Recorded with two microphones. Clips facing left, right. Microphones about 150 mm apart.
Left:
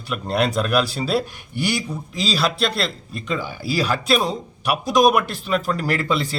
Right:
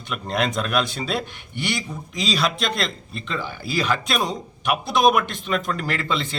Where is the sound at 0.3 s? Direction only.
35° left (ahead or behind).